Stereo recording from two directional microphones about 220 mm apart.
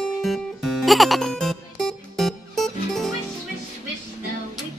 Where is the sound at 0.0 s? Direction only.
Centre (ahead or behind).